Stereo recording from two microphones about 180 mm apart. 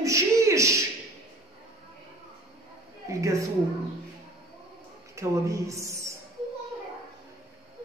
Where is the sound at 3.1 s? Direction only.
15° right (ahead or behind).